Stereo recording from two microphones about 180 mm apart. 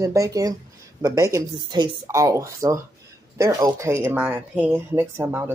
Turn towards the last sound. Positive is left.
turn(degrees=-15)  # may be behind; listen again after turning